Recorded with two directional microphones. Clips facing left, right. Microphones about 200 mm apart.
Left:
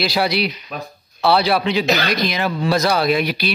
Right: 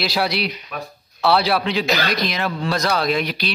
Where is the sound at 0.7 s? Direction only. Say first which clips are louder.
Left 1 dB; 30° left (ahead or behind).